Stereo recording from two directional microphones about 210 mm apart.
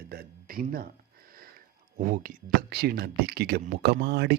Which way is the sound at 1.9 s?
40° right (ahead or behind).